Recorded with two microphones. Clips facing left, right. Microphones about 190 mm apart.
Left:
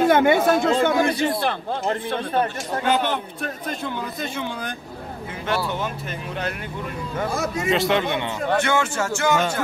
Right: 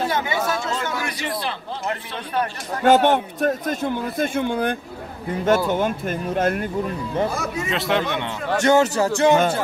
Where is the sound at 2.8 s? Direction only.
50° right (ahead or behind).